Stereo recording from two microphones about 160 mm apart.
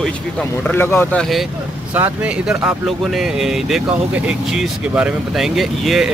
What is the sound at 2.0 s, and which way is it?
Speech, 10° right (ahead or behind).